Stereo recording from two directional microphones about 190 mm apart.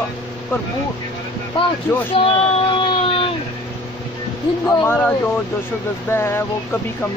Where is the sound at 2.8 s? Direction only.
25° left (ahead or behind).